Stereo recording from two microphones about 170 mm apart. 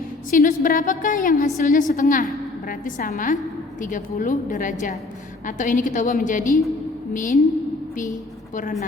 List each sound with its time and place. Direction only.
0.3 s a woman's voice: 50° left (ahead or behind)